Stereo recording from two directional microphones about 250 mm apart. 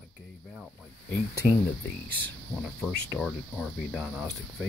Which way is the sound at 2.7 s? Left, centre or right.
Centre.